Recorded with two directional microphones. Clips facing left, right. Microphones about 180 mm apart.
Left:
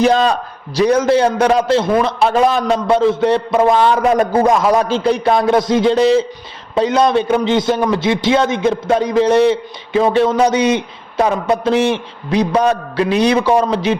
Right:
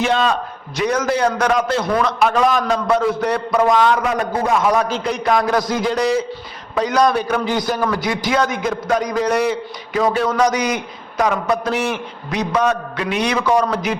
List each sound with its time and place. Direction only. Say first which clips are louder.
0.0 s a man's voice: left 5 dB; 40° left (ahead or behind)